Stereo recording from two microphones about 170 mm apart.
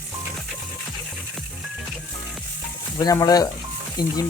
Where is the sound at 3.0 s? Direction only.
20° left (ahead or behind).